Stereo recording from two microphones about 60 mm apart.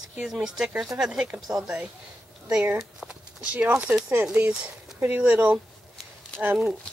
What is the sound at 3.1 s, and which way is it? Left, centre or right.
Speech, centre.